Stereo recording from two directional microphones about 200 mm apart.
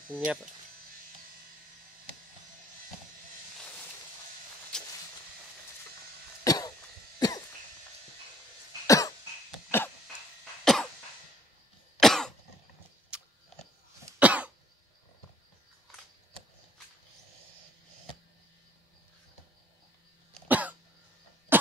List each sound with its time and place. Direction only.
0.1 s speech: 5° right (ahead or behind)
4.7 s vehicle: 5° left (ahead or behind)
6.4 s cough: 15° left (ahead or behind)
8.8 s cough: 15° left (ahead or behind)
9.7 s a sound: 10° left (ahead or behind)
10.6 s cough: centre (ahead or behind)
12.0 s cough: centre (ahead or behind)
13.1 s a sound: 5° right (ahead or behind)
14.2 s cough: 5° right (ahead or behind)
20.4 s cough: 10° right (ahead or behind)